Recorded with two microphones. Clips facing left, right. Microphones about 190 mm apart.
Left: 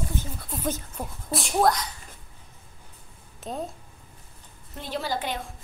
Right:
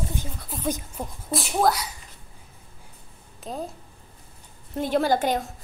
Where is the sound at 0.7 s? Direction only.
5° right (ahead or behind).